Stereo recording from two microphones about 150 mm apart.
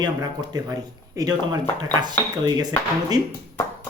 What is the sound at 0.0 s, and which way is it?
A man's voice, 25° right (ahead or behind).